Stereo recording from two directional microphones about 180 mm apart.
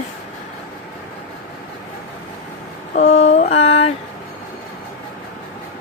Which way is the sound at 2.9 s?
40° left (ahead or behind).